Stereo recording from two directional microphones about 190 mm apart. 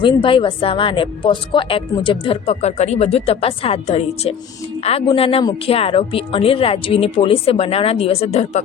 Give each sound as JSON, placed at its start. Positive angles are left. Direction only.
{"t": 0.0, "sound": "speech", "side_deg": 25}